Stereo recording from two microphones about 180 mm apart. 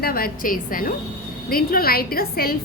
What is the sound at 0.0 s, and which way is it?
A woman's voice, 55° left (ahead or behind).